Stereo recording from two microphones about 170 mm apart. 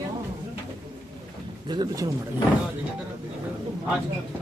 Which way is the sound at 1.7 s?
25° right (ahead or behind).